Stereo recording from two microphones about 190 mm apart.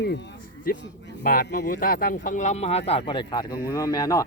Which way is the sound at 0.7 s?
50° left (ahead or behind).